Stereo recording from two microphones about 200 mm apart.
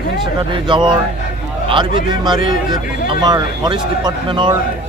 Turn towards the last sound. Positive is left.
turn(degrees=-20)  # may be behind; listen again after turning